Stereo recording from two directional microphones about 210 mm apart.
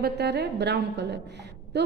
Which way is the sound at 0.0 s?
50° right (ahead or behind).